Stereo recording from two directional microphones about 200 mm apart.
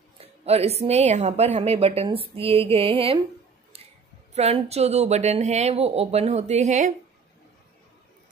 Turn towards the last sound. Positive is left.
turn(degrees=-35)  # may be behind; listen again after turning